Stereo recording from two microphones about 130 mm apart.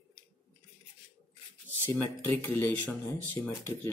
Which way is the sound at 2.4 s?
15° left (ahead or behind).